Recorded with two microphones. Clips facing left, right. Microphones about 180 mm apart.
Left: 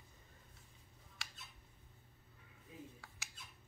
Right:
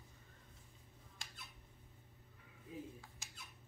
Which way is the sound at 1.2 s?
75° left (ahead or behind).